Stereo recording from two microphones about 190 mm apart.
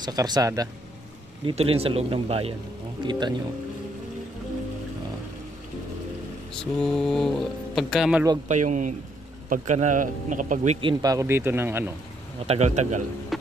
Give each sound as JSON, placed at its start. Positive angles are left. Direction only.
{"t": 0.0, "sound": "speech", "side_deg": -20}
{"t": 1.4, "sound": "speech", "side_deg": -30}
{"t": 6.5, "sound": "speech", "side_deg": 5}
{"t": 8.5, "sound": "speech", "side_deg": -40}
{"t": 10.8, "sound": "speech", "side_deg": -25}
{"t": 12.4, "sound": "speech", "side_deg": -35}
{"t": 13.3, "sound": "a sound", "side_deg": 0}